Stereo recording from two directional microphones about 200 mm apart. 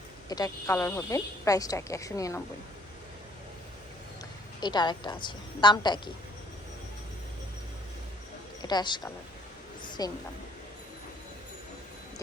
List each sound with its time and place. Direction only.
0.3 s speech: 20° left (ahead or behind)
4.6 s a woman's voice: 20° left (ahead or behind)
8.6 s a woman's voice: 20° left (ahead or behind)